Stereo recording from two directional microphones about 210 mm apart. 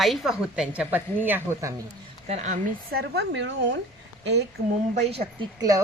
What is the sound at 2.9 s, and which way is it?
Speech, 55° right (ahead or behind).